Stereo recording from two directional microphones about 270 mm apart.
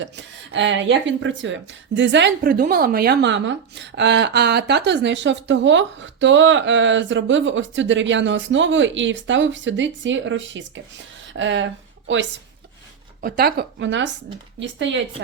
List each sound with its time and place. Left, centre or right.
0.0 s speech: right
13.2 s speech: right